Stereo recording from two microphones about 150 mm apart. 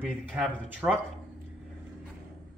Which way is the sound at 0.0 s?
Centre (ahead or behind).